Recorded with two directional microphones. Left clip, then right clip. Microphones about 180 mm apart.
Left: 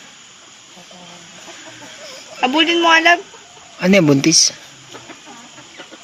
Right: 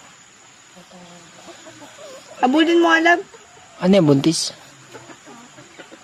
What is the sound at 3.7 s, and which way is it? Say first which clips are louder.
Speech: left 2 dB; centre (ahead or behind).